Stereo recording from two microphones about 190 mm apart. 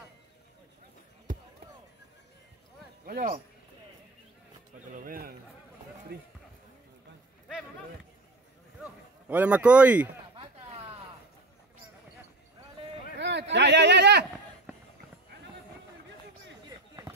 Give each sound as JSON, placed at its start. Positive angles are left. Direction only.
{"t": 3.1, "sound": "a man's voice", "side_deg": -40}
{"t": 4.9, "sound": "a man's voice", "side_deg": -50}
{"t": 9.3, "sound": "speech", "side_deg": -10}
{"t": 10.3, "sound": "chop", "side_deg": -30}
{"t": 13.2, "sound": "a sound", "side_deg": -65}
{"t": 16.6, "sound": "basketball bounce", "side_deg": -20}